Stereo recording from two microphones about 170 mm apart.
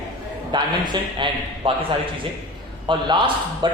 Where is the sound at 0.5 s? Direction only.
25° right (ahead or behind).